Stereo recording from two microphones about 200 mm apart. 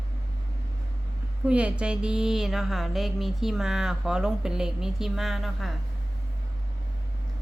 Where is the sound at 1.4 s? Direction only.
5° right (ahead or behind).